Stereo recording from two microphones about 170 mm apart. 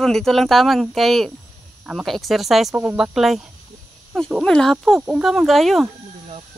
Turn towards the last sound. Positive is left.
turn(degrees=0)  # may be behind; listen again after turning